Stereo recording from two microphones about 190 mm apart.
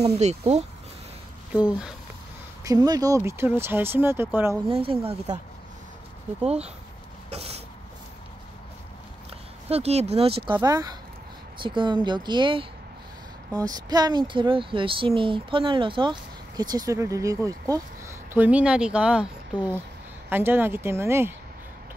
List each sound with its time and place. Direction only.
0.0 s speech: 35° right (ahead or behind)
2.6 s speech: 20° right (ahead or behind)
4.6 s speech: 30° right (ahead or behind)
6.4 s speech: 35° right (ahead or behind)
7.2 s a sound: 35° right (ahead or behind)
9.7 s speech: 35° right (ahead or behind); by 21.3 s 15° right (ahead or behind)